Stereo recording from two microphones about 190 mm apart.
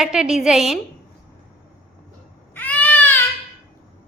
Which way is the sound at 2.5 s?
10° left (ahead or behind).